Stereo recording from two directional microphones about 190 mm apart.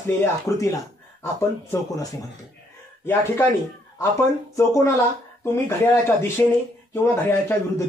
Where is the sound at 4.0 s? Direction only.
15° left (ahead or behind).